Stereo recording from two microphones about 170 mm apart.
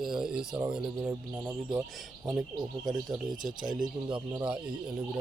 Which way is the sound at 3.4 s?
50° right (ahead or behind).